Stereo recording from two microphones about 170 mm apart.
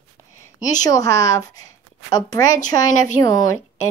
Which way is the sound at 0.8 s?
20° left (ahead or behind).